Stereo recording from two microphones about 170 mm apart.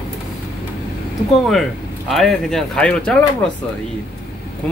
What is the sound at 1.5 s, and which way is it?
Speech, centre (ahead or behind).